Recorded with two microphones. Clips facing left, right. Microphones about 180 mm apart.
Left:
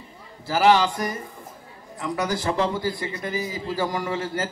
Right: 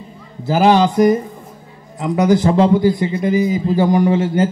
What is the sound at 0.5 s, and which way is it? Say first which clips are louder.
A man's voice: right 6 dB; 20° right (ahead or behind).